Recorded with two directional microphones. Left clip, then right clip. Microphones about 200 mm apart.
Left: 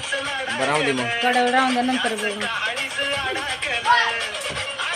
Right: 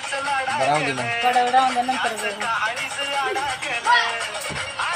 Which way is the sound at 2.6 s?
Centre (ahead or behind).